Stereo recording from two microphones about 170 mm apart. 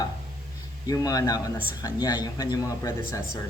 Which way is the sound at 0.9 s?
20° left (ahead or behind).